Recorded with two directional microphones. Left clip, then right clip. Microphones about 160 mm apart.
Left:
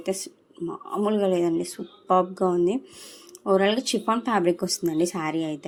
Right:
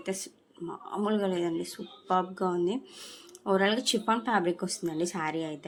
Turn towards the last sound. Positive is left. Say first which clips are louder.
# left 5 dB
turn(degrees=15)  # may be behind; listen again after turning